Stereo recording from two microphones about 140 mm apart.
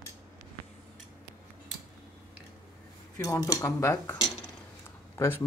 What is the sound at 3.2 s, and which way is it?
Speech, 25° left (ahead or behind).